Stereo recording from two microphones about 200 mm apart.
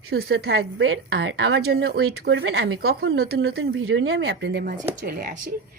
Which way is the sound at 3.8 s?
90° right.